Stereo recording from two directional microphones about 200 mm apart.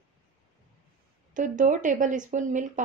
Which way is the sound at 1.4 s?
40° right (ahead or behind).